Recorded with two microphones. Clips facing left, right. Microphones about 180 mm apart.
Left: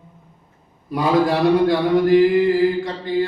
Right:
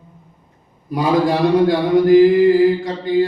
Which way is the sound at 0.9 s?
20° right (ahead or behind).